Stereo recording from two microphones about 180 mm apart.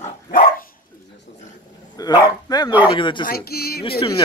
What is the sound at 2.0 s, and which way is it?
Speech, 20° left (ahead or behind).